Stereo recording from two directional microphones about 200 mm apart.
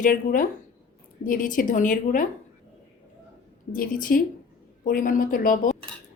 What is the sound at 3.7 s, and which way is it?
A woman's voice, 45° left (ahead or behind).